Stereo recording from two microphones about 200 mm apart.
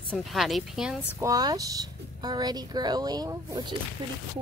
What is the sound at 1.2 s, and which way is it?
Speech, 20° right (ahead or behind).